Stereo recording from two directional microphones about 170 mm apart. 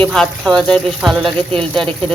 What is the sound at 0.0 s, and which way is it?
Speech, centre (ahead or behind).